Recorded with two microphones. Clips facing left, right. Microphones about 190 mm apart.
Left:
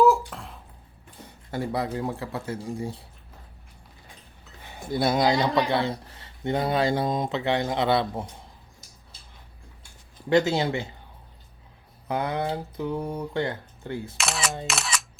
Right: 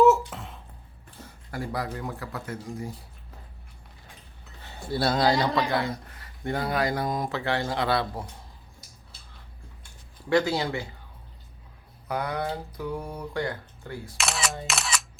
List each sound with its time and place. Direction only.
0.0 s a sound: centre (ahead or behind)
1.2 s speech: 25° left (ahead or behind)
4.6 s speech: 15° left (ahead or behind)
5.7 s speech: 30° left (ahead or behind)
10.2 s speech: 25° left (ahead or behind)
12.0 s speech: 25° left (ahead or behind)
14.2 s single-lens reflex camera: centre (ahead or behind)